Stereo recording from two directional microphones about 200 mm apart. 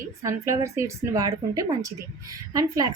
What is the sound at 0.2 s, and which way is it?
A woman's voice, 15° right (ahead or behind).